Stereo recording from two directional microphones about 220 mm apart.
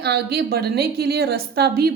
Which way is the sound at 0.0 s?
45° right (ahead or behind).